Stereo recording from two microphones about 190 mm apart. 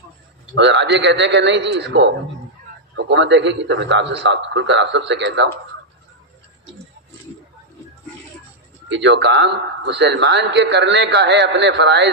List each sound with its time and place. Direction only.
0.5 s a man's voice: 65° right (ahead or behind)
8.9 s a man's voice: 70° right (ahead or behind)